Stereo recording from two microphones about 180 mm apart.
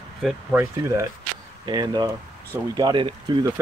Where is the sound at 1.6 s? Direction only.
25° right (ahead or behind).